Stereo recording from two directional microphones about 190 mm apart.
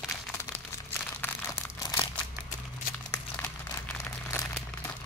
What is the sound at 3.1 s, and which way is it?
Crumpling, 10° left (ahead or behind).